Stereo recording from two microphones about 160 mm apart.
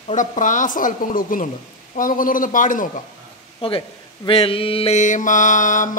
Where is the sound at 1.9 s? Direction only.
60° left (ahead or behind).